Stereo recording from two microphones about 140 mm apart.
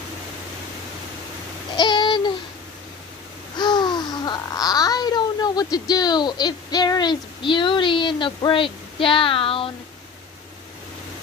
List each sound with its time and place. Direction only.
1.8 s babbling: 30° left (ahead or behind)
3.5 s speech: 30° left (ahead or behind)